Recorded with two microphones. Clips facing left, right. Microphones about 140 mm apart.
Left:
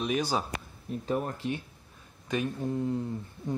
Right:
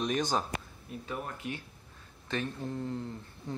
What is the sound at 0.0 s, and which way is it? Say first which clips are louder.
Speech: left 1 dB; 10° left (ahead or behind).